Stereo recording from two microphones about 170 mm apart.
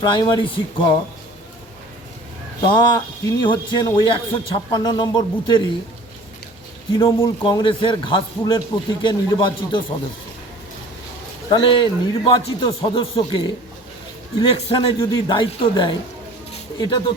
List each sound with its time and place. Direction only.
0.0 s a man's voice: 25° left (ahead or behind)
2.6 s a man's voice: 25° left (ahead or behind)
7.4 s a man's voice: 30° left (ahead or behind)
11.4 s a man's voice: 30° left (ahead or behind)
16.5 s a sound: 25° left (ahead or behind)